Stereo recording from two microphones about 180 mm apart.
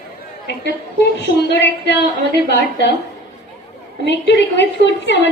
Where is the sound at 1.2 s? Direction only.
70° left (ahead or behind).